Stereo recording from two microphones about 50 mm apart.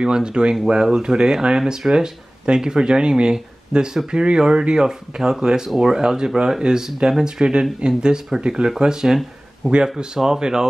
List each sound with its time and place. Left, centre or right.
0.0 s speech: centre